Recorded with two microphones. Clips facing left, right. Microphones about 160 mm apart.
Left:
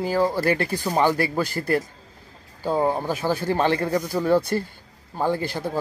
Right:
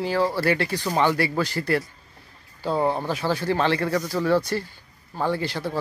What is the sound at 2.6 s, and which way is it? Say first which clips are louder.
Speech: left 1 dB; 15° left (ahead or behind).